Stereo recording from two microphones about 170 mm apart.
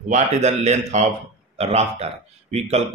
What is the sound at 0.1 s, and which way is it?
Speech, 40° right (ahead or behind).